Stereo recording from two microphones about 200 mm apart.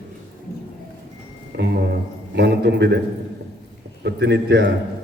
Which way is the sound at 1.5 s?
55° right (ahead or behind).